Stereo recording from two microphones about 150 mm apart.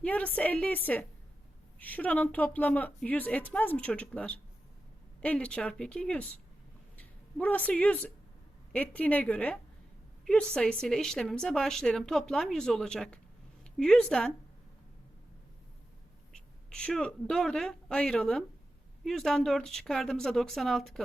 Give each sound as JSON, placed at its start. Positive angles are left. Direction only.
{"t": 0.0, "sound": "a woman's voice", "side_deg": 10}
{"t": 16.3, "sound": "a woman's voice", "side_deg": 5}